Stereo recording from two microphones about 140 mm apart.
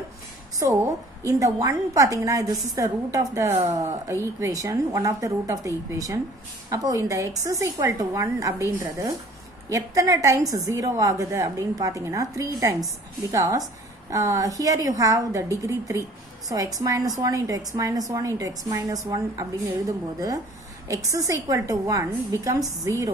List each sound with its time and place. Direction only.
1.2 s a woman's voice: 25° right (ahead or behind)
20.9 s a woman's voice: 25° right (ahead or behind)